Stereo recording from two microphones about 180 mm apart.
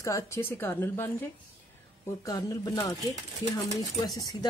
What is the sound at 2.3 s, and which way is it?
Speech, 20° left (ahead or behind).